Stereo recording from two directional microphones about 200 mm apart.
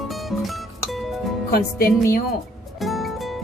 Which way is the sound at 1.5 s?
50° left (ahead or behind).